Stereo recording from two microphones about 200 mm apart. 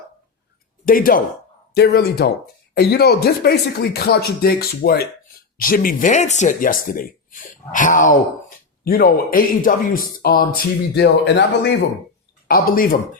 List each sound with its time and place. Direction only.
0.9 s speech: 45° left (ahead or behind)
12.5 s speech: 50° left (ahead or behind)